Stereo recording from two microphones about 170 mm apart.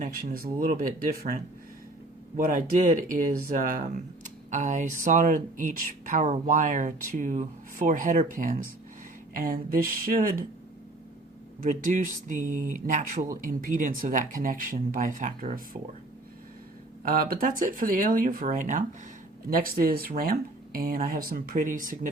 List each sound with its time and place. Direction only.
0.0 s speech: 60° right (ahead or behind)
11.6 s speech: 50° right (ahead or behind)
17.1 s speech: 60° right (ahead or behind)